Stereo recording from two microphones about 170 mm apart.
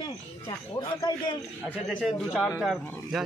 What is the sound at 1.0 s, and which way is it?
Speech, 25° left (ahead or behind).